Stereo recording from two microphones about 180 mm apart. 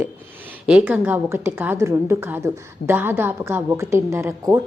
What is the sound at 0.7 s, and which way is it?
A woman's voice, 5° right (ahead or behind).